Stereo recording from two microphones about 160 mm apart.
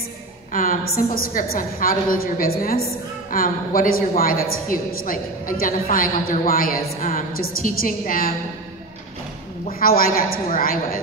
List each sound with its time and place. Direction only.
0.5 s a woman's voice: 60° left (ahead or behind)
9.7 s a woman's voice: 65° left (ahead or behind)